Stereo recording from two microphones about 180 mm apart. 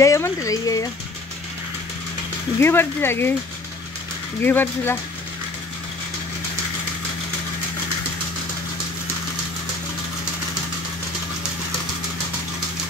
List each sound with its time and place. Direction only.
0.0 s speech: 15° left (ahead or behind)
2.6 s speech: 10° left (ahead or behind)
4.4 s speech: 10° left (ahead or behind)